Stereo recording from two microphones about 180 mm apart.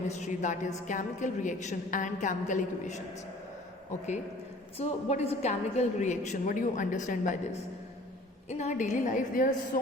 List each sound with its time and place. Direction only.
0.1 s a woman's voice: 40° left (ahead or behind)
4.8 s a woman's voice: 35° left (ahead or behind)
8.4 s a woman's voice: 40° left (ahead or behind)